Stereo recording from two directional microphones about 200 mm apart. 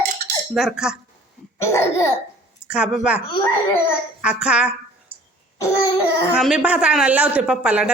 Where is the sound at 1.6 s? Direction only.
15° left (ahead or behind).